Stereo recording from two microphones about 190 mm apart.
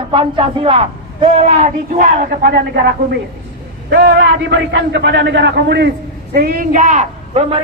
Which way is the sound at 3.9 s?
60° right (ahead or behind).